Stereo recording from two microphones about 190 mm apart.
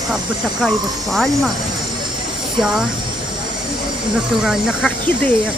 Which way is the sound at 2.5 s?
5° right (ahead or behind).